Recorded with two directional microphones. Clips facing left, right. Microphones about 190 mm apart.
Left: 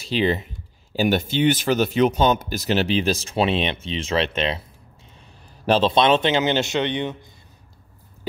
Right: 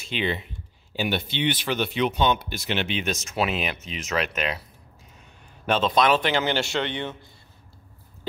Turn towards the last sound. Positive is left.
turn(degrees=20)  # may be behind; listen again after turning